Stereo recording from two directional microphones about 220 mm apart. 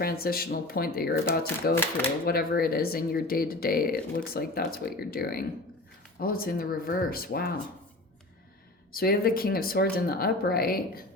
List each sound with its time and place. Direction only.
0.0 s speech: 45° left (ahead or behind)
1.7 s speech: 10° left (ahead or behind)
2.2 s speech: 45° left (ahead or behind)
8.9 s speech: 45° left (ahead or behind)